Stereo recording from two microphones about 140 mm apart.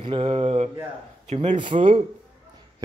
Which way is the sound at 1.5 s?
35° right (ahead or behind).